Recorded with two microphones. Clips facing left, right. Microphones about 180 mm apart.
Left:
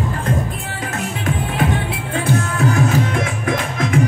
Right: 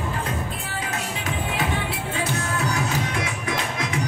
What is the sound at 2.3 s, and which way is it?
Music, 55° left (ahead or behind).